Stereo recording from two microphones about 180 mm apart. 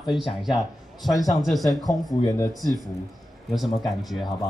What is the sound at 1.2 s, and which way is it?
Speech, 20° left (ahead or behind).